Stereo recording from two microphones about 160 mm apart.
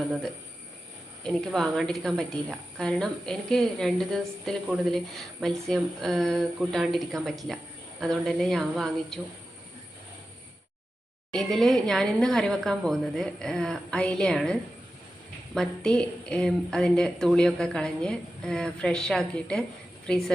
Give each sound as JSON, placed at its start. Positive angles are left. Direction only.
{"t": 1.2, "sound": "a woman's voice", "side_deg": 0}
{"t": 11.3, "sound": "a woman's voice", "side_deg": 0}